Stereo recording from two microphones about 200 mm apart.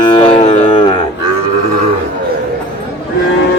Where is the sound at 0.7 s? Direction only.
25° left (ahead or behind).